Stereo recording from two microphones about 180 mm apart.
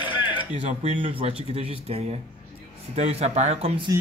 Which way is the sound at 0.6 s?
35° right (ahead or behind).